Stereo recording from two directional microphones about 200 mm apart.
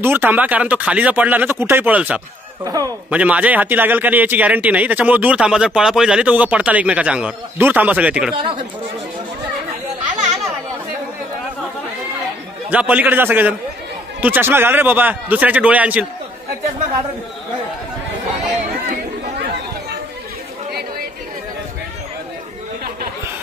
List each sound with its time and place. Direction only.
0.0 s speech: 10° right (ahead or behind)
2.7 s speech: 15° right (ahead or behind)
3.2 s speech: 5° right (ahead or behind)
8.4 s speech: 25° right (ahead or behind)
12.6 s speech: 10° right (ahead or behind)